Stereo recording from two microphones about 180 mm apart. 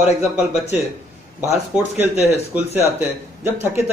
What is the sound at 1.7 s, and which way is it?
A man's voice, 5° right (ahead or behind).